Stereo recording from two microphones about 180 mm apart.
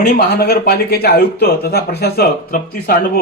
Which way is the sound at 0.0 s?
60° left (ahead or behind).